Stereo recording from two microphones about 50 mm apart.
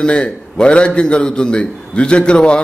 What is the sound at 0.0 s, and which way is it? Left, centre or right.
A man's voice, centre.